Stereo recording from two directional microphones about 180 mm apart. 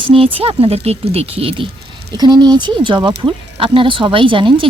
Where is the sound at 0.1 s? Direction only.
30° right (ahead or behind).